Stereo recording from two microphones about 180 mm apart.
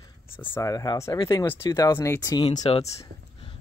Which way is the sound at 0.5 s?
20° left (ahead or behind).